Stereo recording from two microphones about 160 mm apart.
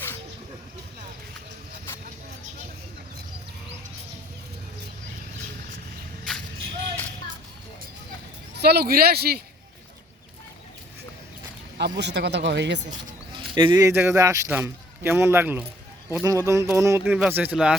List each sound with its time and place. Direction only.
8.5 s speech: 85° right
11.8 s speech: 90° right
13.3 s a sound: 30° right (ahead or behind)
13.8 s speech: 15° right (ahead or behind)
16.2 s a sound: 20° right (ahead or behind)
17.0 s speech: 5° right (ahead or behind)